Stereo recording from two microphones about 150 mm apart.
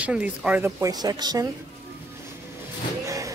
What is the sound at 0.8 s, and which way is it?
Speech, 25° right (ahead or behind).